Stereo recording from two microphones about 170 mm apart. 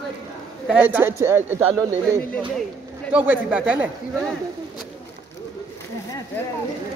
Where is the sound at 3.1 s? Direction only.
10° right (ahead or behind).